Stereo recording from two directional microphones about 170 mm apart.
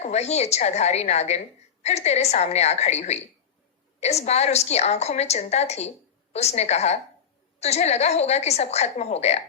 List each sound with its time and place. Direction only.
0.0 s a woman's voice: 40° left (ahead or behind)